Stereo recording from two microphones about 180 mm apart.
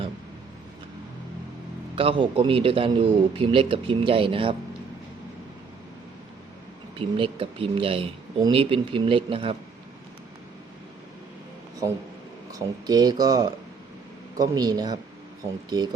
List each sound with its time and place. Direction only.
2.0 s speech: 30° right (ahead or behind)
6.9 s speech: 30° right (ahead or behind)
12.5 s speech: 20° right (ahead or behind)